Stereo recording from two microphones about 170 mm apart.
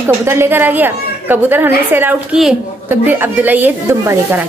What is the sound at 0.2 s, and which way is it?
A woman's voice, 15° right (ahead or behind).